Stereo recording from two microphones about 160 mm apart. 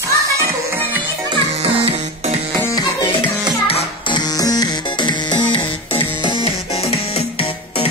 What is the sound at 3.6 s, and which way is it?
Music, 35° left (ahead or behind).